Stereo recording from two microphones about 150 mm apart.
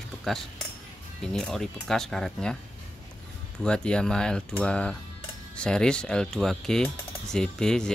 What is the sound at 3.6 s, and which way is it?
Speech, 5° left (ahead or behind).